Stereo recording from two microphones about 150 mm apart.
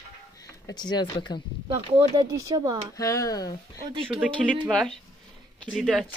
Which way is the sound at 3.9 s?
35° right (ahead or behind).